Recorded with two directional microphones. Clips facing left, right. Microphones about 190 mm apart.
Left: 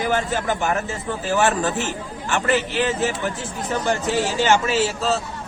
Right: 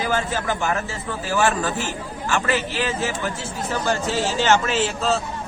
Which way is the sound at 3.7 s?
15° left (ahead or behind).